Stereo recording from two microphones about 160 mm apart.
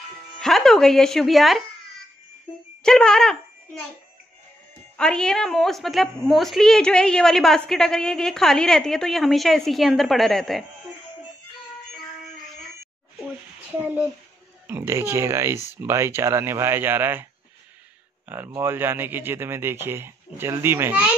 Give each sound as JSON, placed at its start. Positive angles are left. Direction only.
{"t": 0.4, "sound": "speech", "side_deg": 0}
{"t": 2.8, "sound": "a child's voice", "side_deg": 5}
{"t": 4.9, "sound": "a woman's voice", "side_deg": 5}
{"t": 14.7, "sound": "speech", "side_deg": -15}
{"t": 18.3, "sound": "speech", "side_deg": -15}